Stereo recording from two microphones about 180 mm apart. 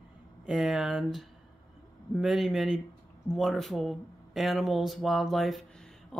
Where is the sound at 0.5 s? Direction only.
5° right (ahead or behind).